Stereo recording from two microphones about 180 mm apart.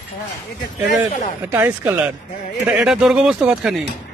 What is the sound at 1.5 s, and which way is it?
A man's voice, 10° right (ahead or behind).